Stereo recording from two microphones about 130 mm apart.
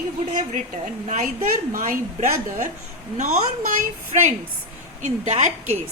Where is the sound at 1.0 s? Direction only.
65° right (ahead or behind); by 2.0 s 85° right.